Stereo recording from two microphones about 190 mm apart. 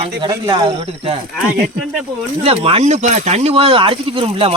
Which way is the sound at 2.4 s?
30° right (ahead or behind).